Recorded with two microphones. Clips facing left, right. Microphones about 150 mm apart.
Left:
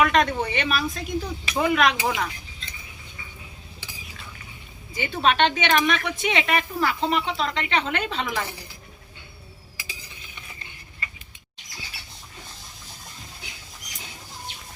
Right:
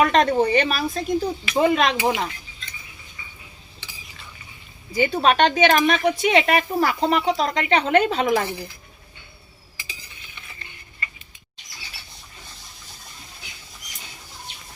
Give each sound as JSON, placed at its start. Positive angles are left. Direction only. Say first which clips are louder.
{"t": 0.0, "sound": "a woman's voice", "louder": "right 4 dB", "side_deg": -35}
{"t": 4.9, "sound": "a woman's voice", "louder": "right 4 dB", "side_deg": -35}